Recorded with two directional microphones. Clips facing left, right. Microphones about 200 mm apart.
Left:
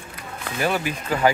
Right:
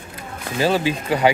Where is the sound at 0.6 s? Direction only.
30° right (ahead or behind).